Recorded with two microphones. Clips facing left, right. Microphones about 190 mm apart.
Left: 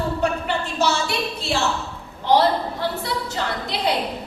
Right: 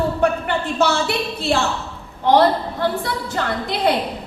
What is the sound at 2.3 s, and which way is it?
A woman's voice, 55° right (ahead or behind).